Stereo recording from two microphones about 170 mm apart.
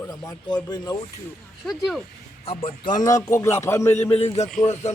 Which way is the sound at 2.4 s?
30° left (ahead or behind).